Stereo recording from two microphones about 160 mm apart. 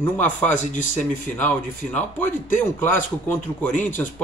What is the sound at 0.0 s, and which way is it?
Speech, 10° left (ahead or behind).